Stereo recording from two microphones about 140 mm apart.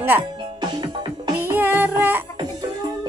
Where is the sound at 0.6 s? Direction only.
35° right (ahead or behind).